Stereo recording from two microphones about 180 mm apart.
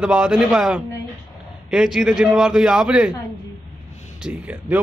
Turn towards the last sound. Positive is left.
turn(degrees=-5)  # may be behind; listen again after turning